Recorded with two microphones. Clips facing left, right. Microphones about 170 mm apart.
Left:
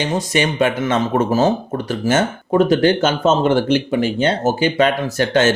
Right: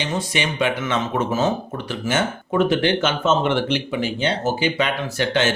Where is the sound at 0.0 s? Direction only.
45° left (ahead or behind).